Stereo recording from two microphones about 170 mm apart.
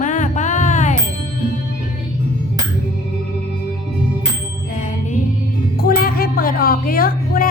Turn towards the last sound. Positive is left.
turn(degrees=60)  # may be behind; listen again after turning